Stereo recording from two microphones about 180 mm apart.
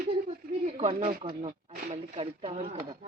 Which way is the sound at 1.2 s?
25° right (ahead or behind).